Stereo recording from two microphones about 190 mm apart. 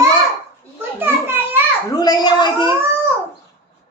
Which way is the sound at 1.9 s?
20° left (ahead or behind).